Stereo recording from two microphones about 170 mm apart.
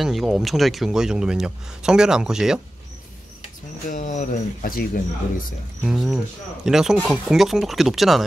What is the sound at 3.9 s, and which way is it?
Speech, 50° left (ahead or behind).